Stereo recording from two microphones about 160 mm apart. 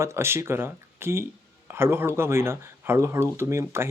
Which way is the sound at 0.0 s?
15° right (ahead or behind).